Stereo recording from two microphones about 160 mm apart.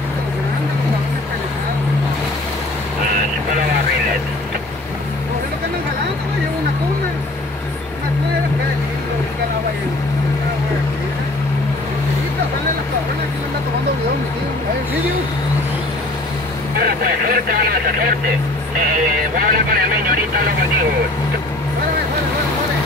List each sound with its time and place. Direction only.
16.8 s vehicle: 65° right (ahead or behind)
19.3 s vehicle: 65° right (ahead or behind)